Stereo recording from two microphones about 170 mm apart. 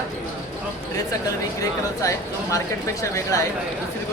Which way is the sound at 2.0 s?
20° left (ahead or behind).